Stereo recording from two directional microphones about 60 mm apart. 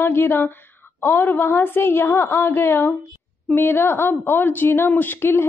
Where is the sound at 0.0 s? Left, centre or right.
Left.